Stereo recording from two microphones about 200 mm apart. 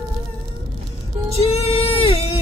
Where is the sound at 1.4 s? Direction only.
30° left (ahead or behind).